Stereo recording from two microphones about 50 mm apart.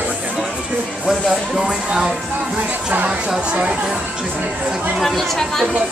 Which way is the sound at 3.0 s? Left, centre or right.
Centre.